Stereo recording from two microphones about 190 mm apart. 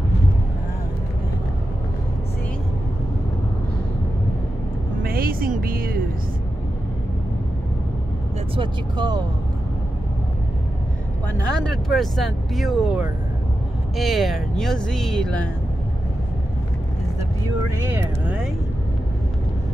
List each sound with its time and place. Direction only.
5.0 s music: 50° right (ahead or behind)
8.5 s speech: 25° right (ahead or behind)
11.3 s speech: 5° left (ahead or behind)
18.2 s vehicle: 10° right (ahead or behind)